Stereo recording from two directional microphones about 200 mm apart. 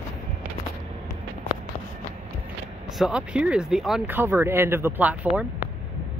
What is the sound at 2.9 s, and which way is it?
Speech, 5° right (ahead or behind).